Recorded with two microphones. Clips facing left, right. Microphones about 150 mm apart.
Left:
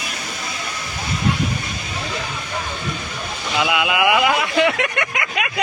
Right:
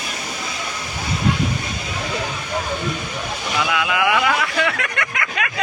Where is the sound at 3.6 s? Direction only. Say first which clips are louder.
Left 2 dB; 20° left (ahead or behind).